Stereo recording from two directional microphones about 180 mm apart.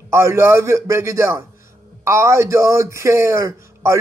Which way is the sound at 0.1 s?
15° right (ahead or behind).